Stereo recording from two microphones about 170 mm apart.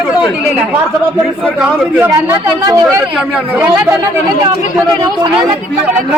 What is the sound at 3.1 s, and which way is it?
Speech, 5° right (ahead or behind).